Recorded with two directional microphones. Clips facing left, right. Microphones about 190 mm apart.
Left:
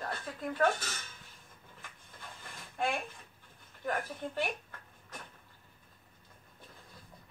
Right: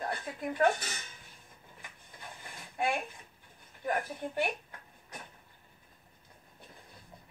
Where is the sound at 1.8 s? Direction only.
15° right (ahead or behind).